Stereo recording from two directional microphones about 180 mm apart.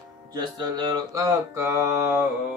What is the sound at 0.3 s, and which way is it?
Mantra, 20° right (ahead or behind).